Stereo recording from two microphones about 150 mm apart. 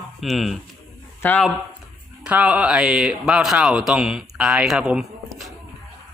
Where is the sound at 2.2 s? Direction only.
10° right (ahead or behind).